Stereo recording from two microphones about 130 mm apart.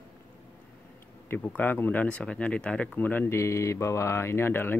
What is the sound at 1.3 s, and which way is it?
Speech, 15° left (ahead or behind).